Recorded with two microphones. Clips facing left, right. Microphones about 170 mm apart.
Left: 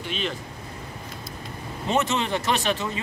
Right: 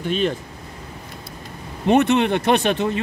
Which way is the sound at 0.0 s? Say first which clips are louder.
Right 9 dB; 50° right (ahead or behind).